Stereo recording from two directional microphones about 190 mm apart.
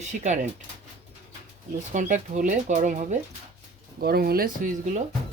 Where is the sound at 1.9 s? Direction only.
40° right (ahead or behind).